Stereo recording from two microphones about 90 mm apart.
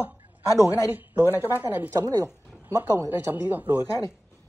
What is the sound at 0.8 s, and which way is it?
Speech, 25° right (ahead or behind).